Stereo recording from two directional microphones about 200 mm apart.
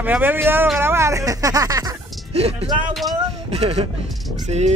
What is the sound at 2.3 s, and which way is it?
Speech, 30° right (ahead or behind).